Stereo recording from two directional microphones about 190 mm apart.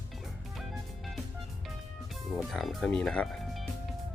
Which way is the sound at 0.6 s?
Centre (ahead or behind).